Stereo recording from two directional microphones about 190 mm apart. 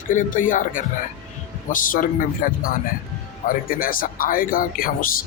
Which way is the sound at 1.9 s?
45° left (ahead or behind).